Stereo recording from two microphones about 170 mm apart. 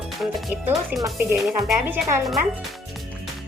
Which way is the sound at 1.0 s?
15° right (ahead or behind).